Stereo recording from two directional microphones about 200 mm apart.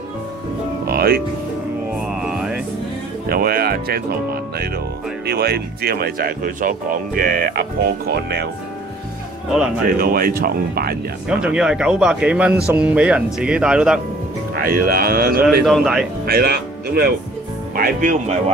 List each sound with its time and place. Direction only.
0.8 s music: 50° right (ahead or behind)
2.0 s music: 5° right (ahead or behind)
3.3 s speech: 50° right (ahead or behind)
9.9 s speech: 50° right (ahead or behind)
11.2 s speech: 5° right (ahead or behind)
14.6 s speech: 45° right (ahead or behind)
15.6 s speech: centre (ahead or behind)
16.3 s speech: 50° right (ahead or behind)